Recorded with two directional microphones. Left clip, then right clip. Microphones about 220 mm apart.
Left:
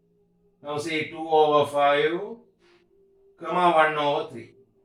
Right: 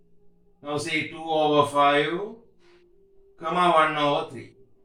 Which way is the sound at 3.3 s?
15° left (ahead or behind).